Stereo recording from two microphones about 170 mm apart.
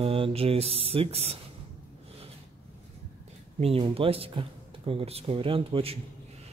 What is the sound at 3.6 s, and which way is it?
Speech, 35° right (ahead or behind).